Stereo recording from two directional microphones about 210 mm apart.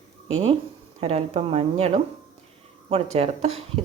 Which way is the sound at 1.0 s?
30° right (ahead or behind).